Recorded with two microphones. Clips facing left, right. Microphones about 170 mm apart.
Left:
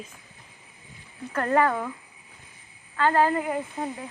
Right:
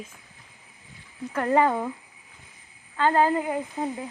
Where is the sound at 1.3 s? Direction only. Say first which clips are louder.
Right 1 dB; 10° right (ahead or behind).